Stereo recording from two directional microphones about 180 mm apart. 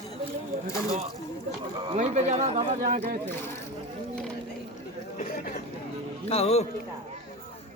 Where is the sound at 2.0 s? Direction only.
40° right (ahead or behind).